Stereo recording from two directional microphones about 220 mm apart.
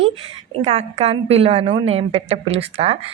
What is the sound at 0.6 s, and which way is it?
A woman's voice, 30° right (ahead or behind).